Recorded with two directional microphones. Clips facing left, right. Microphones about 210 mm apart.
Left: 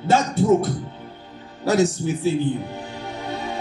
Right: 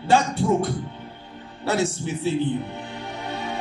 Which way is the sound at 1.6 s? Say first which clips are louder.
Left 5 dB; 40° left (ahead or behind).